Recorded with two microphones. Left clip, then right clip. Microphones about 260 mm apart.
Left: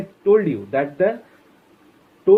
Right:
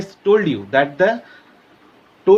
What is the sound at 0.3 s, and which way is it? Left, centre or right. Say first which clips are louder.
Speech: right 1 dB; right.